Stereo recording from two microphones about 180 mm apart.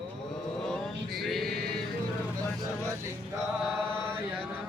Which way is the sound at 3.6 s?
5° left (ahead or behind).